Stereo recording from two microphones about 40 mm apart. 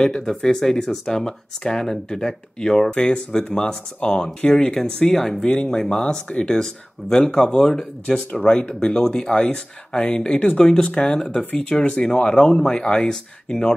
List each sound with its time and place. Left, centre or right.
0.0 s speech: centre